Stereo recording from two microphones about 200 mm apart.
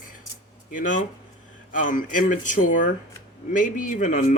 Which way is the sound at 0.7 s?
40° left (ahead or behind).